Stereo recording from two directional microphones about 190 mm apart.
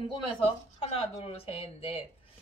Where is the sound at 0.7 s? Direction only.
30° left (ahead or behind).